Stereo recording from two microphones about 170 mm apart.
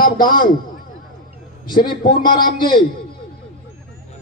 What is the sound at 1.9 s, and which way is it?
Speech, 30° left (ahead or behind).